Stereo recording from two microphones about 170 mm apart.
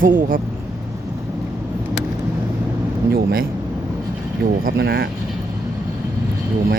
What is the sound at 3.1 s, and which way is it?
Speech, 60° right (ahead or behind).